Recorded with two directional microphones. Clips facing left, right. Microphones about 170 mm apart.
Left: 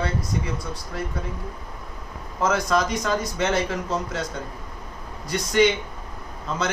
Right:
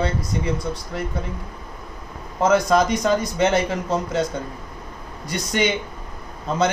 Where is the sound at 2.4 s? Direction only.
20° right (ahead or behind).